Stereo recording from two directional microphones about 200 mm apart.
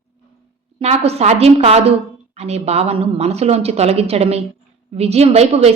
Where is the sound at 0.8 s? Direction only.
30° right (ahead or behind).